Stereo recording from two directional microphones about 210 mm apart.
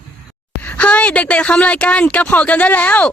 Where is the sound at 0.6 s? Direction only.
5° left (ahead or behind).